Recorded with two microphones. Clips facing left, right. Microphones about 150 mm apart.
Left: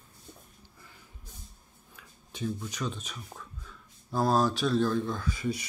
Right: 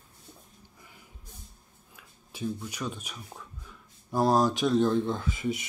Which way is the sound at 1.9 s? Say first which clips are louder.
Left 1 dB; 5° right (ahead or behind).